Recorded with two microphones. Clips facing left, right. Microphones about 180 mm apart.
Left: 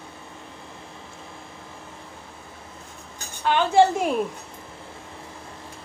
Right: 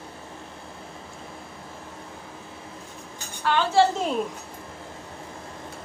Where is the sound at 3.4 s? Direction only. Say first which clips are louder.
Left 2 dB; 20° left (ahead or behind).